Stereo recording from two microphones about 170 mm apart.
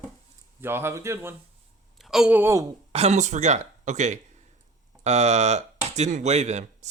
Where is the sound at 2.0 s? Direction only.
5° right (ahead or behind).